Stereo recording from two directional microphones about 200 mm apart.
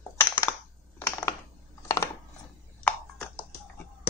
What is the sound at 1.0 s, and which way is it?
Typing, 15° left (ahead or behind).